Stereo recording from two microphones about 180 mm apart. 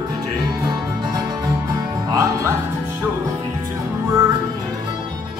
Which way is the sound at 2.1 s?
20° right (ahead or behind).